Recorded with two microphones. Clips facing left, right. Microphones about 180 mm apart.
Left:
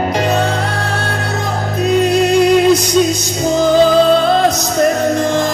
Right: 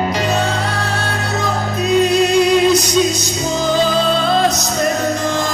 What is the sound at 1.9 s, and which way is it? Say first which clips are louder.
Music: left 1 dB; 55° left (ahead or behind).